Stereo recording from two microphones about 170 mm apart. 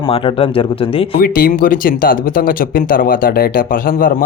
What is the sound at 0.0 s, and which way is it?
Speech, 30° left (ahead or behind).